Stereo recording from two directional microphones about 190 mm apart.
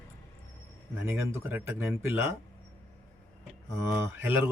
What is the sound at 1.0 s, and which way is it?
Speech, 15° right (ahead or behind).